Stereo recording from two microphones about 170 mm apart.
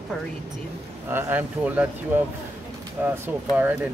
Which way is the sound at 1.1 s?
10° right (ahead or behind).